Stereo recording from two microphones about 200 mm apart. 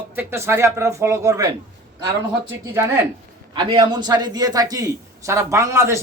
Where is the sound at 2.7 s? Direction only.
15° right (ahead or behind).